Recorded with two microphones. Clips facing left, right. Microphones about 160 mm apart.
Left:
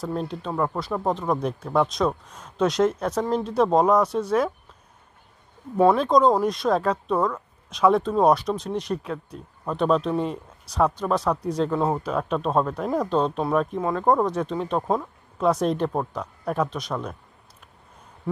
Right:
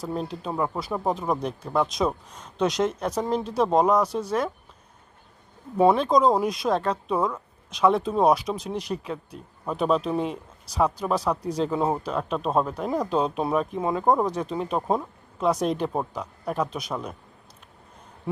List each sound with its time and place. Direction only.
0.1 s speech: centre (ahead or behind)
5.9 s speech: centre (ahead or behind)